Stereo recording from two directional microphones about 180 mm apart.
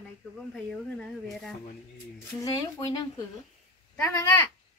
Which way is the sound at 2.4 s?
20° left (ahead or behind).